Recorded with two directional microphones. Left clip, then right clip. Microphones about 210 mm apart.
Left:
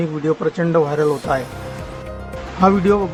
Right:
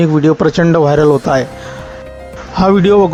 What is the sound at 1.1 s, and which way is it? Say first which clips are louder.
Speech: right 8 dB; 25° right (ahead or behind).